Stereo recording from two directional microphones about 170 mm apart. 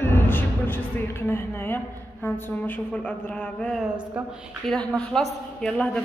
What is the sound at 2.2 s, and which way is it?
A man's voice, 10° left (ahead or behind).